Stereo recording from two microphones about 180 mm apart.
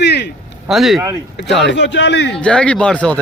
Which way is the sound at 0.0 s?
70° left (ahead or behind).